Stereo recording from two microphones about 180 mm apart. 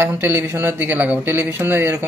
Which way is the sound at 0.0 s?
15° right (ahead or behind).